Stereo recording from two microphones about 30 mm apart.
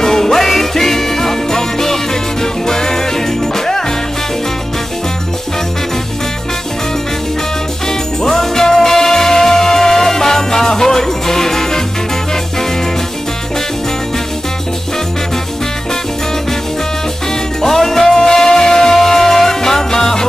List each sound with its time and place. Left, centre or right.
0.0 s music: centre
8.2 s music: centre
17.6 s music: centre